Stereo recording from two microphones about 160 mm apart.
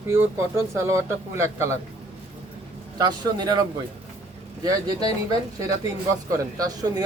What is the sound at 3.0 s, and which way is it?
Speech, 25° right (ahead or behind).